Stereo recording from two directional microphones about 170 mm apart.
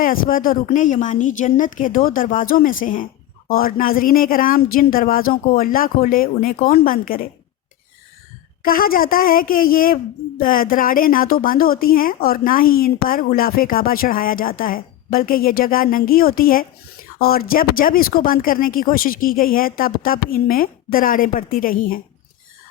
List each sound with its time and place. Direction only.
0.0 s a woman's voice: 55° left (ahead or behind)
8.6 s a woman's voice: 60° left (ahead or behind)